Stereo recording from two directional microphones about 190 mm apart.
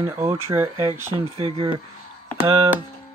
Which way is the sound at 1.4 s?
30° right (ahead or behind).